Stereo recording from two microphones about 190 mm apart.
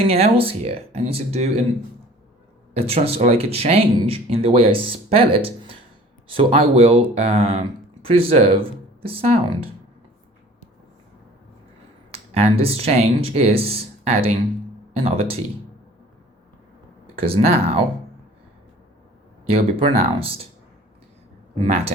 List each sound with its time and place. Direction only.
0.0 s speech: 30° right (ahead or behind)
2.7 s speech: 30° right (ahead or behind)
12.1 s speech: 35° right (ahead or behind)
17.2 s speech: 30° right (ahead or behind)
19.5 s speech: 30° right (ahead or behind)
21.6 s speech: 35° right (ahead or behind)